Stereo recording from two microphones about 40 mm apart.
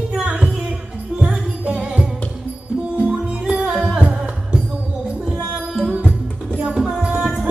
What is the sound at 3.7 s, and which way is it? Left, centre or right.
Music, centre.